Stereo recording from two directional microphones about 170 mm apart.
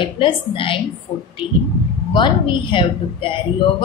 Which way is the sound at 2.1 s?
30° left (ahead or behind).